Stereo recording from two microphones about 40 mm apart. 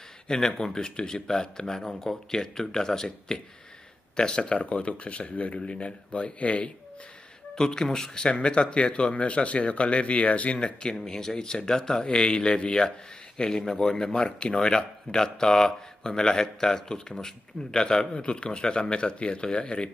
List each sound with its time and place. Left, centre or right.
0.6 s speech: centre
7.5 s speech: centre; by 10.6 s left
10.6 s speech: left
18.1 s speech: left